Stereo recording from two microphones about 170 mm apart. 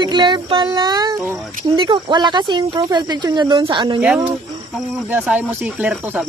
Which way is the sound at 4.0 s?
5° right (ahead or behind).